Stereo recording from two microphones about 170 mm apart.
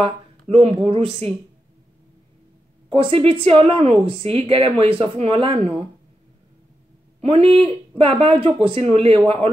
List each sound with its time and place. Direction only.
0.0 s a woman's voice: 35° right (ahead or behind)
2.9 s a woman's voice: 35° right (ahead or behind)
7.2 s a woman's voice: 35° right (ahead or behind)